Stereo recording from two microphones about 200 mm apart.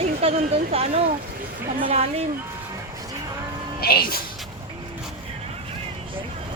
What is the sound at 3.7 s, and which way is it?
Speech, 50° left (ahead or behind).